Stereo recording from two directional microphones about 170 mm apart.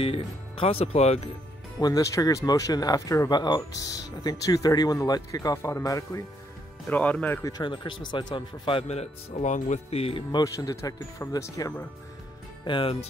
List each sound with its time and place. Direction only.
0.0 s a man's voice: 35° left (ahead or behind)
1.8 s speech: 20° left (ahead or behind)
6.9 s speech: 10° left (ahead or behind)
7.4 s a man's voice: 25° left (ahead or behind)
10.4 s speech: 20° left (ahead or behind)
12.6 s speech: 30° left (ahead or behind)